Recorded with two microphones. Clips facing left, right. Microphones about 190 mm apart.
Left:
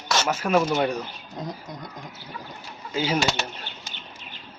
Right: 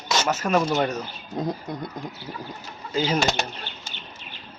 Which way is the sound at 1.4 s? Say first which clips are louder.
Right 6 dB; 60° right (ahead or behind).